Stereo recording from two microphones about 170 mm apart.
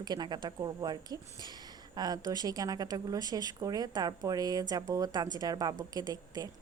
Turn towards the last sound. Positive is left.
turn(degrees=-20)  # may be behind; listen again after turning